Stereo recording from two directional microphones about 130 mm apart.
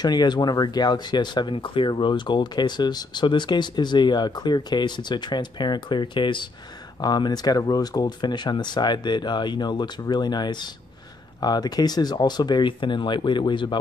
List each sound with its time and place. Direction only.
0.0 s speech: 35° left (ahead or behind)